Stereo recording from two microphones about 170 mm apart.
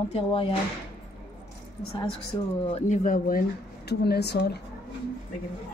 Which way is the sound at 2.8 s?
50° left (ahead or behind).